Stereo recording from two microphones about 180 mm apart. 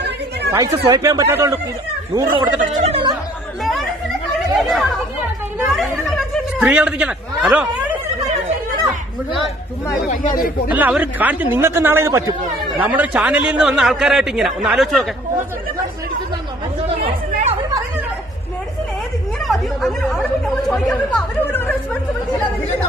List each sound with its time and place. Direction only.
0.5 s speech: 20° right (ahead or behind)
2.8 s speech: 30° right (ahead or behind)
4.6 s chatter: centre (ahead or behind)
5.7 s snicker: centre (ahead or behind)
10.7 s speech: 10° right (ahead or behind)
17.0 s chatter: 35° right (ahead or behind)
19.4 s chatter: centre (ahead or behind)
20.6 s speech: centre (ahead or behind)